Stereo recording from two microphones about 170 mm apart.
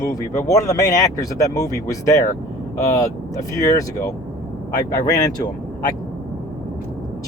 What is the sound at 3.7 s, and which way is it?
Speech, 20° left (ahead or behind).